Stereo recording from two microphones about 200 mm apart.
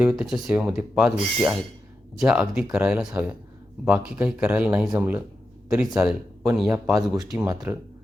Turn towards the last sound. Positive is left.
turn(degrees=-10)  # may be behind; listen again after turning